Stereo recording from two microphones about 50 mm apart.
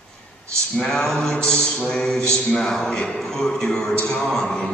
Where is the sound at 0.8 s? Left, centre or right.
Centre.